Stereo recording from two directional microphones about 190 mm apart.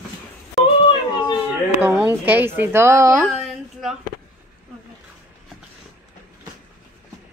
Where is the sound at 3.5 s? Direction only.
Centre (ahead or behind).